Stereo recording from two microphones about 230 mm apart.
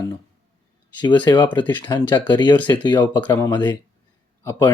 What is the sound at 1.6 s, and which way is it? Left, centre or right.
Speech, centre.